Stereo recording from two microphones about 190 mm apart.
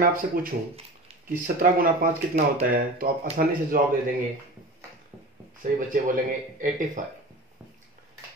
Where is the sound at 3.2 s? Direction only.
35° right (ahead or behind).